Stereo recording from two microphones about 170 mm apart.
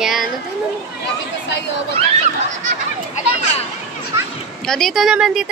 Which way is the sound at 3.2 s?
45° left (ahead or behind).